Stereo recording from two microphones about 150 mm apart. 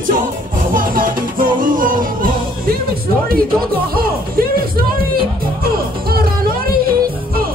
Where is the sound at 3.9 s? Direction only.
75° right (ahead or behind).